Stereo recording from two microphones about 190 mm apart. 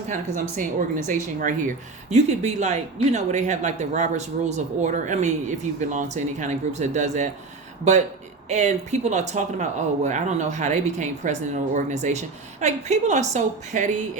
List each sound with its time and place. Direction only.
0.1 s speech: 45° right (ahead or behind)
8.4 s speech: 40° right (ahead or behind)